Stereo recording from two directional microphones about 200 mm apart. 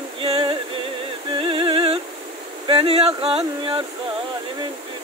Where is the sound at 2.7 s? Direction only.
25° right (ahead or behind).